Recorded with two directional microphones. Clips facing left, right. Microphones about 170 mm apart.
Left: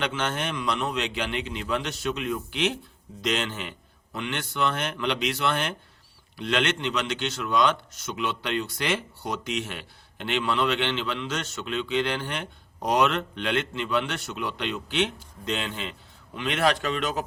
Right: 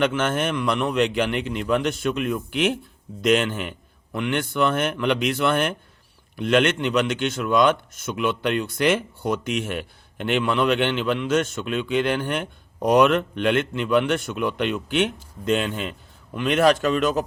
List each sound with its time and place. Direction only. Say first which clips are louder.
0.0 s a man's voice: right 7 dB; 50° right (ahead or behind)